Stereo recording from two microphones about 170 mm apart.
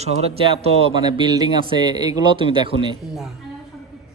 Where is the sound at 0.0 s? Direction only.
35° right (ahead or behind).